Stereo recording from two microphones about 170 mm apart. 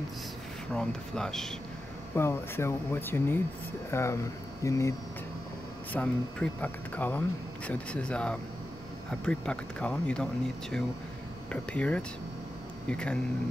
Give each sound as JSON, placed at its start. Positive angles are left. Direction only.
{"t": 0.7, "sound": "speech", "side_deg": 5}
{"t": 2.1, "sound": "speech", "side_deg": 15}
{"t": 5.9, "sound": "speech", "side_deg": 10}
{"t": 11.5, "sound": "speech", "side_deg": 5}